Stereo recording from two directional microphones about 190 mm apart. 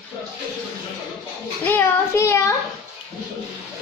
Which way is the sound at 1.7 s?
15° left (ahead or behind).